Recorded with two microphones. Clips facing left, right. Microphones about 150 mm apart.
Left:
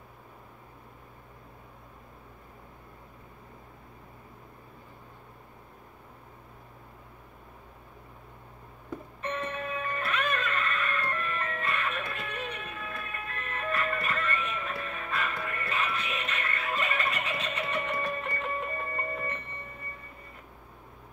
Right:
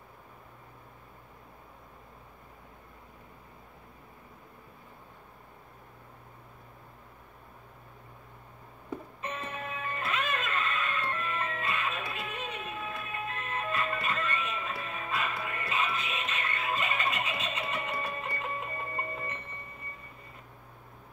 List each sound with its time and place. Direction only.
9.4 s music: 25° right (ahead or behind)